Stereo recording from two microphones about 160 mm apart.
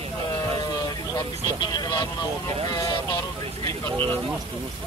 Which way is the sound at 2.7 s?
25° left (ahead or behind).